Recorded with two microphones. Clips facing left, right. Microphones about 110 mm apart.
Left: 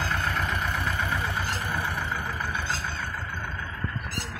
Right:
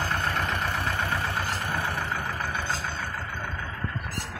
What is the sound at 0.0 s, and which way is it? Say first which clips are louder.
Vehicle: right 1 dB; 60° right (ahead or behind).